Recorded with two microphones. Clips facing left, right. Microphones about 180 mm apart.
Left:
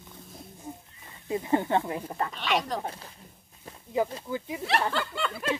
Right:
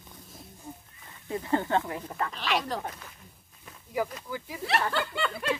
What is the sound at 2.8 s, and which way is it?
Speech, 30° left (ahead or behind).